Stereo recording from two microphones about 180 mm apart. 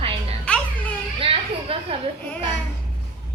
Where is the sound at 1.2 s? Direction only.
30° right (ahead or behind).